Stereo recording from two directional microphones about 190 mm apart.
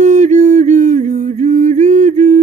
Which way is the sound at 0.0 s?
40° right (ahead or behind).